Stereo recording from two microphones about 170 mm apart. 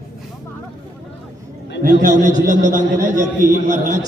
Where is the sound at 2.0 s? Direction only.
50° right (ahead or behind).